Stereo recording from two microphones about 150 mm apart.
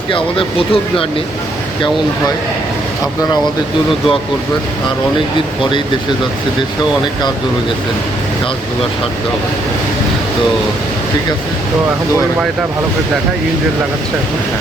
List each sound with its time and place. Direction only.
0.1 s speech: 35° left (ahead or behind)